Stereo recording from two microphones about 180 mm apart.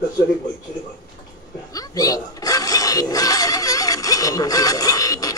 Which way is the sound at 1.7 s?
20° left (ahead or behind).